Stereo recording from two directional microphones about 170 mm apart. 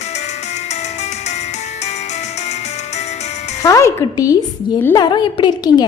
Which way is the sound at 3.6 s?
20° left (ahead or behind).